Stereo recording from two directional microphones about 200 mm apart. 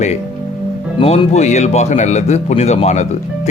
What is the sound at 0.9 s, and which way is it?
Speech, 25° left (ahead or behind).